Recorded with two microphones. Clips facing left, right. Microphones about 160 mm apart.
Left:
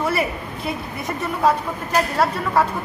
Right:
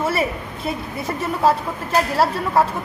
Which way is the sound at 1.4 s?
30° right (ahead or behind).